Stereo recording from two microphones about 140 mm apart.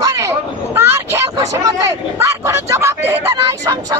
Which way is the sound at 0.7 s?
20° right (ahead or behind).